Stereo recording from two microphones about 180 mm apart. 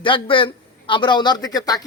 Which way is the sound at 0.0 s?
30° left (ahead or behind).